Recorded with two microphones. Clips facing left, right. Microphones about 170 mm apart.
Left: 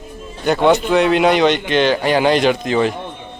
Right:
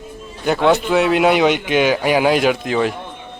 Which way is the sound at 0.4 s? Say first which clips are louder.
Left 1 dB; centre (ahead or behind).